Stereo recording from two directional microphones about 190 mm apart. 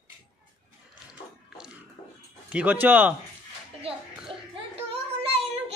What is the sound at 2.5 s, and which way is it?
Speech, 10° right (ahead or behind).